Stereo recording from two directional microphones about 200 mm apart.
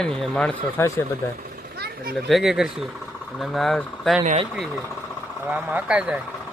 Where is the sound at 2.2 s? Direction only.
Centre (ahead or behind).